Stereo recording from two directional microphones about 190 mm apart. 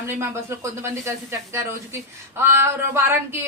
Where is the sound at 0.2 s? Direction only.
15° right (ahead or behind).